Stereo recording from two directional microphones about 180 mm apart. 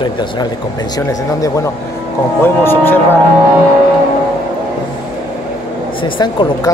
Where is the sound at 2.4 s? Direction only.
10° left (ahead or behind).